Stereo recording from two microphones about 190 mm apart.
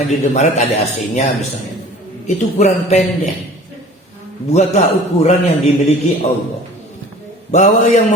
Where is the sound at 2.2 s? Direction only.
35° left (ahead or behind).